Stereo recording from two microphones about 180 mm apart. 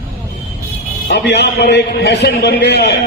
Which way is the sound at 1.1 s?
70° left (ahead or behind).